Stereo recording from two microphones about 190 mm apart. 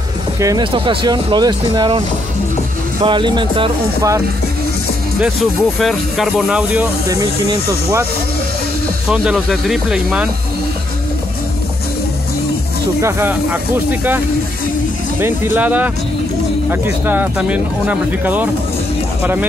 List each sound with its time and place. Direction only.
0.4 s speech: 20° right (ahead or behind)
5.2 s speech: centre (ahead or behind)
9.1 s speech: 5° right (ahead or behind)
13.0 s speech: 10° right (ahead or behind)
15.1 s speech: 10° right (ahead or behind)